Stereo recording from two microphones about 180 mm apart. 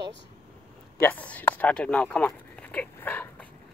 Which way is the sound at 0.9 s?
10° left (ahead or behind).